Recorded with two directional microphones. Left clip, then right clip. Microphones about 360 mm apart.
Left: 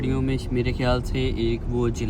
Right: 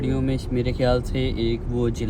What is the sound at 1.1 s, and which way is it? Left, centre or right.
Speech, centre.